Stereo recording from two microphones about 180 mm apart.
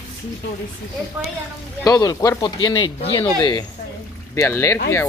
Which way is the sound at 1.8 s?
20° left (ahead or behind).